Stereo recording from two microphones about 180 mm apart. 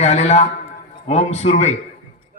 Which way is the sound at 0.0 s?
40° left (ahead or behind).